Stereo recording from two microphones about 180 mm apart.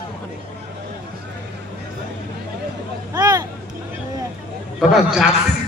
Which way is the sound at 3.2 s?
20° right (ahead or behind).